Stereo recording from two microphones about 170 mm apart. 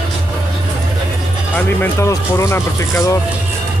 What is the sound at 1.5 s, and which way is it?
Speech, 15° left (ahead or behind).